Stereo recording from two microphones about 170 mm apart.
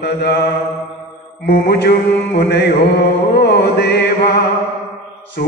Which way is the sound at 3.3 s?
75° left (ahead or behind).